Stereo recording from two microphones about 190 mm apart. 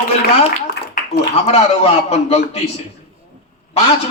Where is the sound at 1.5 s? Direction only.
35° left (ahead or behind).